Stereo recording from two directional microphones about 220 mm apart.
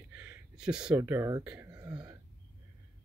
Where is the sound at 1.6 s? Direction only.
15° right (ahead or behind).